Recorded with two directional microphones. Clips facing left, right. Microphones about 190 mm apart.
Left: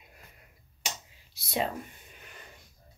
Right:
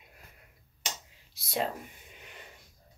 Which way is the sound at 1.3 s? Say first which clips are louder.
Left 1 dB; centre (ahead or behind).